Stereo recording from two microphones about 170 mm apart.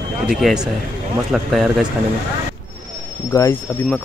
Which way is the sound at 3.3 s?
20° left (ahead or behind).